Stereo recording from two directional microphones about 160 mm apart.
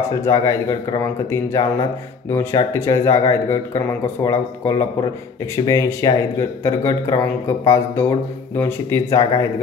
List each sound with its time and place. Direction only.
0.2 s speech: 20° left (ahead or behind)